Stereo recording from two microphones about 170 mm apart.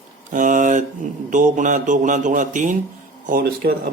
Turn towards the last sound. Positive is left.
turn(degrees=-65)  # may be behind; listen again after turning